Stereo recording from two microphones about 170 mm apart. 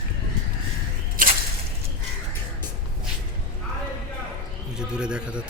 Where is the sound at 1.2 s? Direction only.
55° right (ahead or behind).